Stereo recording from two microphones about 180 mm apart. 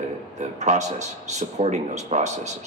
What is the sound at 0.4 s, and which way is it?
Speech, 40° right (ahead or behind).